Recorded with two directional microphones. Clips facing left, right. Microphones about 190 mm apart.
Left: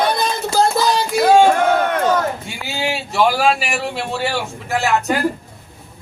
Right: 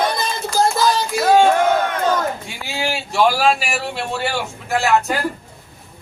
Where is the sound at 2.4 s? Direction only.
Centre (ahead or behind).